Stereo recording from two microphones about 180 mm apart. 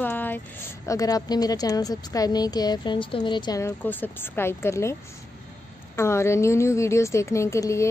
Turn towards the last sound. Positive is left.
turn(degrees=15)  # may be behind; listen again after turning